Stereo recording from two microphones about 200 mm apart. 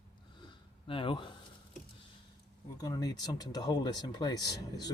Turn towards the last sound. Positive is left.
turn(degrees=20)  # may be behind; listen again after turning